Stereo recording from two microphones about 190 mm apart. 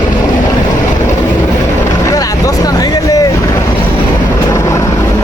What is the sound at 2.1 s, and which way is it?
Vehicle, 20° left (ahead or behind).